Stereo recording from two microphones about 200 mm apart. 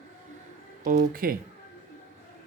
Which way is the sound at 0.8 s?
40° right (ahead or behind).